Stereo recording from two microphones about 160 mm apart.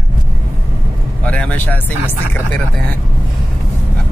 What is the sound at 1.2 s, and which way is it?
Speech, 10° left (ahead or behind).